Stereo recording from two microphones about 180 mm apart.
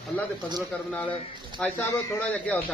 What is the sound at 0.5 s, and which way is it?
Speech, 5° left (ahead or behind).